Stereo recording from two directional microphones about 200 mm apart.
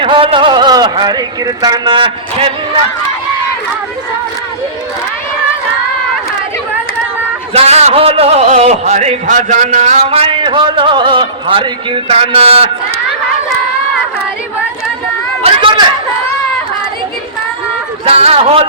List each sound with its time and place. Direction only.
0.0 s speech: 25° right (ahead or behind)
7.5 s a man's voice: 30° right (ahead or behind)
15.4 s a sound: 25° right (ahead or behind)
18.0 s a man's voice: 30° right (ahead or behind)